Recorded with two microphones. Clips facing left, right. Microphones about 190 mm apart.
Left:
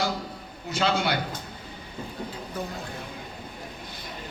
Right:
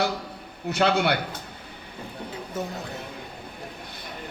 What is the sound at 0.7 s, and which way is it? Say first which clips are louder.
Speech: right 3 dB; 60° right (ahead or behind).